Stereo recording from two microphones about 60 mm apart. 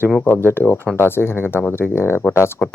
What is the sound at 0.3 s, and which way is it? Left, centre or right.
Speech, left.